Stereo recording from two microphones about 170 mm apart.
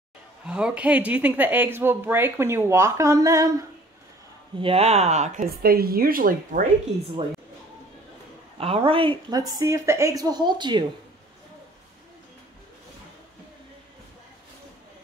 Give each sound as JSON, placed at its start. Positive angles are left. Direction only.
{"t": 0.5, "sound": "speech", "side_deg": -5}
{"t": 4.6, "sound": "speech", "side_deg": -35}
{"t": 5.6, "sound": "speech", "side_deg": -60}
{"t": 8.5, "sound": "speech", "side_deg": -35}
{"t": 9.5, "sound": "a woman's voice", "side_deg": -20}